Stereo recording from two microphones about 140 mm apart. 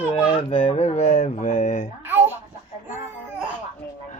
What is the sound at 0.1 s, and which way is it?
Speech, 35° left (ahead or behind).